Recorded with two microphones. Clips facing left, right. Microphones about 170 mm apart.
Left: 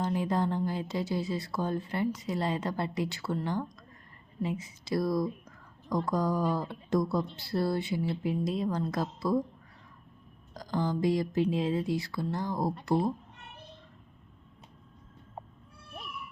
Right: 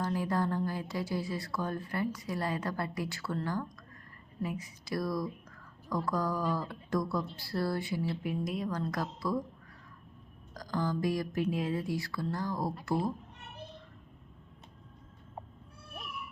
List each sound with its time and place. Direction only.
0.0 s speech: 20° left (ahead or behind)
10.5 s speech: 25° left (ahead or behind)